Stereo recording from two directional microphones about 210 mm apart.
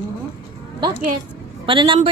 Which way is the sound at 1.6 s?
25° right (ahead or behind).